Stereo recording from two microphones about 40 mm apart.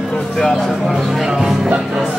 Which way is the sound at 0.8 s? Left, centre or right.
Centre.